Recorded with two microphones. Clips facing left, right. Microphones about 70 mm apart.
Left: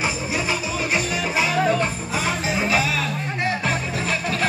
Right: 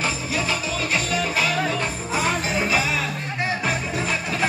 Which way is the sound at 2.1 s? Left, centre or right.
Centre.